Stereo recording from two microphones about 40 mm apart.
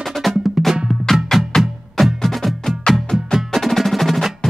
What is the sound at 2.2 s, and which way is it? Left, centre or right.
Music, centre.